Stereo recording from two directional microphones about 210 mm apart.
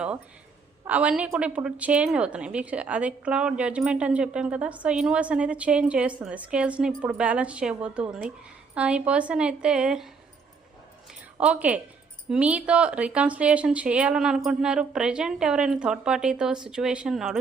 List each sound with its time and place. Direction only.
0.9 s a woman's voice: 5° right (ahead or behind)
11.3 s a woman's voice: 5° right (ahead or behind)